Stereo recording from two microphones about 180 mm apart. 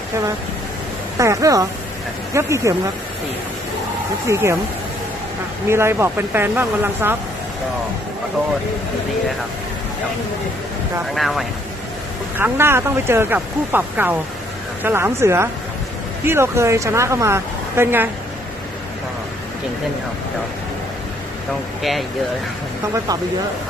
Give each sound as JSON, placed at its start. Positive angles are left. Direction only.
{"t": 1.2, "sound": "speech", "side_deg": -15}
{"t": 4.3, "sound": "speech", "side_deg": -15}
{"t": 5.6, "sound": "speech", "side_deg": -15}
{"t": 11.1, "sound": "speech", "side_deg": 0}
{"t": 12.4, "sound": "speech", "side_deg": -15}